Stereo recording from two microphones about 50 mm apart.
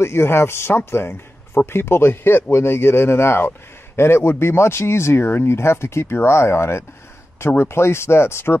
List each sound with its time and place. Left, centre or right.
0.0 s a man's voice: left